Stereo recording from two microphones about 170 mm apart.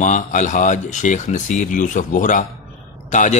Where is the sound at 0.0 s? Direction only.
45° left (ahead or behind).